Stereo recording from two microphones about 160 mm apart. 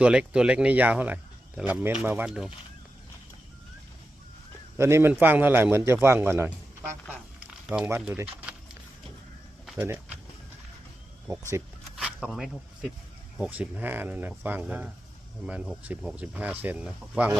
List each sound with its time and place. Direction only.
0.0 s speech: 5° right (ahead or behind)
4.8 s speech: 15° right (ahead or behind)
9.7 s speech: 15° right (ahead or behind)
11.9 s a sound: 5° right (ahead or behind)
13.4 s speech: 10° right (ahead or behind)